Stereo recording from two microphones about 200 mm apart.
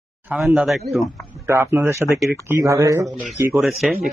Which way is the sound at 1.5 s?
10° right (ahead or behind).